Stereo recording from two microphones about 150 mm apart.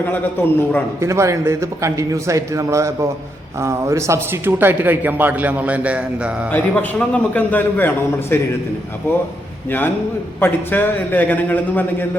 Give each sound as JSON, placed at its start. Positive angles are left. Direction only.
{"t": 0.0, "sound": "a man's voice", "side_deg": 10}
{"t": 0.9, "sound": "a man's voice", "side_deg": -20}
{"t": 6.5, "sound": "a man's voice", "side_deg": 10}
{"t": 10.4, "sound": "a man's voice", "side_deg": 15}